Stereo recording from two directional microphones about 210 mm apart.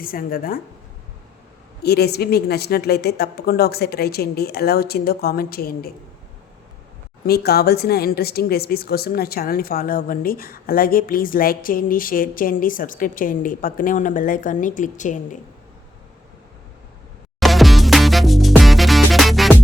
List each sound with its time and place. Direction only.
0.0 s a woman's voice: 45° left (ahead or behind)
1.8 s a woman's voice: 50° left (ahead or behind)
7.3 s a woman's voice: 50° left (ahead or behind)
17.4 s music: centre (ahead or behind)